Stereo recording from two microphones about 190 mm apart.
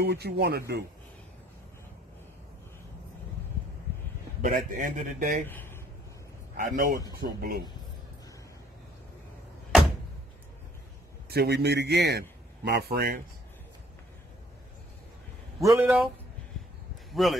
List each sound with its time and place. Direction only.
0.0 s speech: 60° right (ahead or behind)
4.4 s a man's voice: 45° right (ahead or behind)
5.5 s a sound: 10° left (ahead or behind)
6.5 s speech: 45° right (ahead or behind)
11.2 s a man's voice: 55° right (ahead or behind)
15.6 s speech: 15° right (ahead or behind)
17.1 s speech: centre (ahead or behind)